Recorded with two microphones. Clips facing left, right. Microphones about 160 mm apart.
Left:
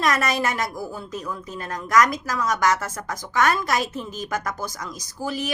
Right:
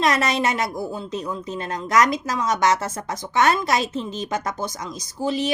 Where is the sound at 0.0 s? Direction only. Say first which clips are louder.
Right 2 dB; 25° right (ahead or behind).